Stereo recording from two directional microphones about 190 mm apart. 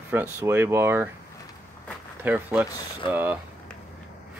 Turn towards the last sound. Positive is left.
turn(degrees=-10)  # may be behind; listen again after turning